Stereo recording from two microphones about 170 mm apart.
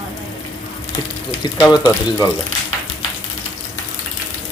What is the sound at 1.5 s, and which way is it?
Speech, 25° left (ahead or behind).